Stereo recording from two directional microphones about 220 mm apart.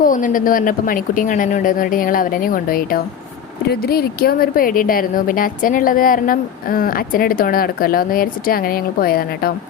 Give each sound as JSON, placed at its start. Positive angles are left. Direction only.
{"t": 0.0, "sound": "speech", "side_deg": 35}